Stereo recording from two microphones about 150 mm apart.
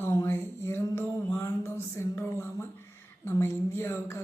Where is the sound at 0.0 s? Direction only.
20° left (ahead or behind).